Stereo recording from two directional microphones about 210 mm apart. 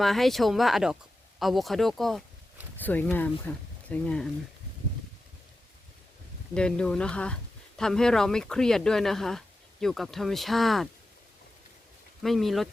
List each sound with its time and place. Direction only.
0.0 s speech: centre (ahead or behind)
6.5 s speech: 5° left (ahead or behind)
12.2 s speech: centre (ahead or behind)